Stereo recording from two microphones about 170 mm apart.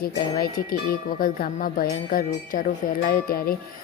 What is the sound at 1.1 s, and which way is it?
Speech, 55° left (ahead or behind).